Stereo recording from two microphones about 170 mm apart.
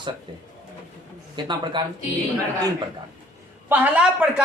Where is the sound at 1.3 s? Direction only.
25° right (ahead or behind).